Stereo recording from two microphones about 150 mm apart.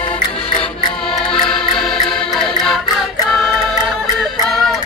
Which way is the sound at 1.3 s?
Centre (ahead or behind).